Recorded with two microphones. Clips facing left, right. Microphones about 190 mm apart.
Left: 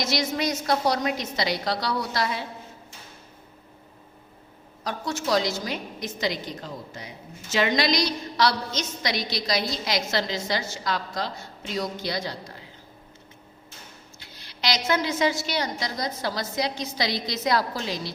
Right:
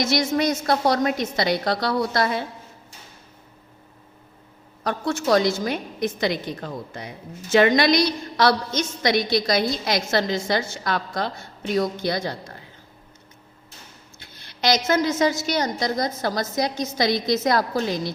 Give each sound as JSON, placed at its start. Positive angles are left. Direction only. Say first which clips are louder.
{"t": 0.0, "sound": "a woman's voice", "louder": "right 5 dB", "side_deg": -50}
{"t": 4.8, "sound": "a woman's voice", "louder": "right 5 dB", "side_deg": -55}
{"t": 14.2, "sound": "a sound", "louder": "right 6 dB", "side_deg": -50}
{"t": 15.4, "sound": "a woman's voice", "louder": "right 5 dB", "side_deg": -45}